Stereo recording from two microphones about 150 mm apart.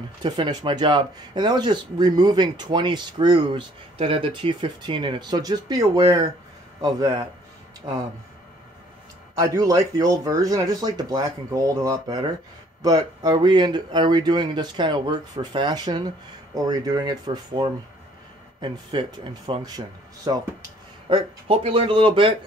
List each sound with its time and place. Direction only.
0.2 s speech: 30° right (ahead or behind)
9.4 s speech: 25° right (ahead or behind)
21.1 s speech: 35° right (ahead or behind)